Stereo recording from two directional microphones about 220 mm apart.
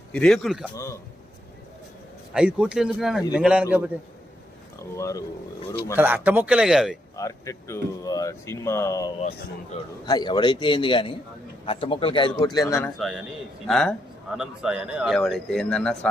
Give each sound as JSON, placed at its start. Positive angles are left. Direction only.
{"t": 0.1, "sound": "a man's voice", "side_deg": 5}
{"t": 2.3, "sound": "a man's voice", "side_deg": -5}
{"t": 4.9, "sound": "speech", "side_deg": 15}
{"t": 6.0, "sound": "speech", "side_deg": -10}
{"t": 7.2, "sound": "a man's voice", "side_deg": 15}
{"t": 13.7, "sound": "a man's voice", "side_deg": 0}